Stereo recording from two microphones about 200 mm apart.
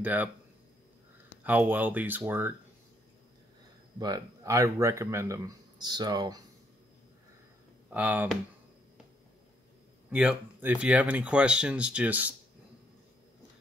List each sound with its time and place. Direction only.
0.0 s speech: 10° right (ahead or behind)
1.4 s speech: 10° right (ahead or behind)
4.0 s speech: 20° right (ahead or behind)
7.9 s speech: 10° right (ahead or behind)
10.1 s speech: 5° right (ahead or behind)